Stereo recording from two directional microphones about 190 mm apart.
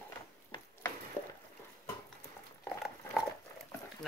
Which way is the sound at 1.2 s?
10° left (ahead or behind).